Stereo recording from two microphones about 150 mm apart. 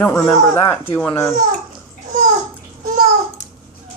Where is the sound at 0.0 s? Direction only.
15° left (ahead or behind).